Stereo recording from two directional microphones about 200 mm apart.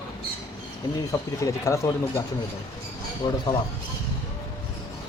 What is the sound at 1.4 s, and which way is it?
Speech, 15° left (ahead or behind).